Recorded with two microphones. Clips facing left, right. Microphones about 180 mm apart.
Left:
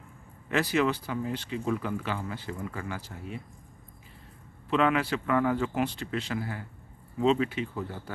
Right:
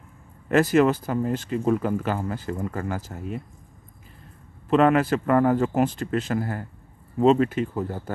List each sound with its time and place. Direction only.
0.5 s speech: 45° right (ahead or behind)
4.6 s speech: 45° right (ahead or behind)